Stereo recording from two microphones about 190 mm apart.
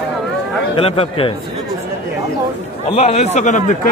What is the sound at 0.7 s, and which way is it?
Speech, 30° left (ahead or behind).